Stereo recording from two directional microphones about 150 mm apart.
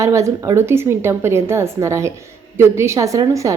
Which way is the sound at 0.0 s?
20° right (ahead or behind).